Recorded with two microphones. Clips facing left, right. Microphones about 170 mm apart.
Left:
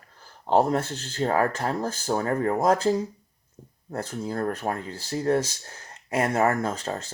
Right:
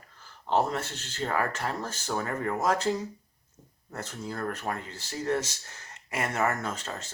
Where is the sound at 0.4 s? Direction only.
50° left (ahead or behind).